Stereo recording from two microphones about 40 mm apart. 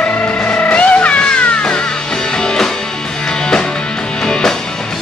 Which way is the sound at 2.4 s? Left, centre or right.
Centre.